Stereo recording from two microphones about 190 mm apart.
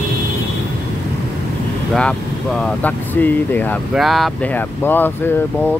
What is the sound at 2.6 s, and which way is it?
Speech, 10° left (ahead or behind).